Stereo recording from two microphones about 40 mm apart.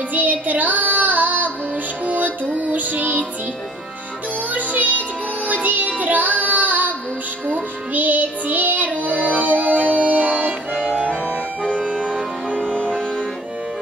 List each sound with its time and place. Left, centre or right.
0.1 s child singing: right
2.0 s music: right
4.5 s music: right
11.6 s music: left